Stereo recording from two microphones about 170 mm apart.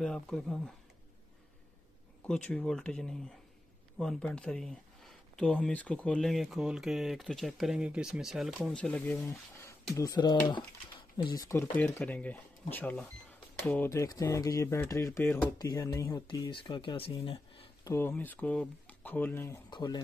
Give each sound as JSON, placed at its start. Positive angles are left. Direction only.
{"t": 0.0, "sound": "speech", "side_deg": 5}
{"t": 2.2, "sound": "speech", "side_deg": 5}
{"t": 17.2, "sound": "a sound", "side_deg": 35}
{"t": 17.8, "sound": "speech", "side_deg": 15}
{"t": 19.7, "sound": "speech", "side_deg": 25}